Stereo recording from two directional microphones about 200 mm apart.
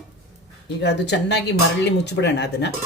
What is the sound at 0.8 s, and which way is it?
Speech, 60° left (ahead or behind).